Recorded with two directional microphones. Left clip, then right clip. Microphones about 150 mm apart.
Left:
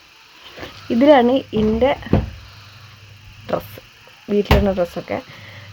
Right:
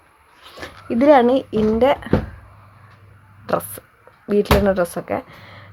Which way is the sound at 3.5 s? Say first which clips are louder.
Right 2 dB; 15° right (ahead or behind).